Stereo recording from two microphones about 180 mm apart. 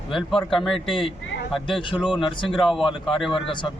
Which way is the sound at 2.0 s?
5° right (ahead or behind).